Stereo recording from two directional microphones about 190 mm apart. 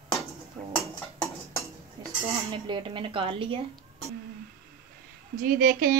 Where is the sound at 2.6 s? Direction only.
25° right (ahead or behind).